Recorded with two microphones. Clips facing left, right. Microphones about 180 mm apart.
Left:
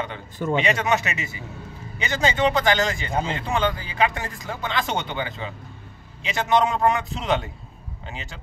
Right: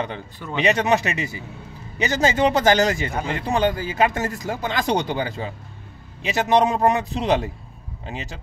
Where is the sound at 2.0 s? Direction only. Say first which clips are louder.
Right 3 dB; 40° right (ahead or behind).